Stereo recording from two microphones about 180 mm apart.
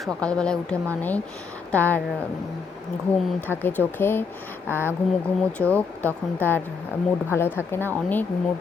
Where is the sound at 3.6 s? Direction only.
10° left (ahead or behind).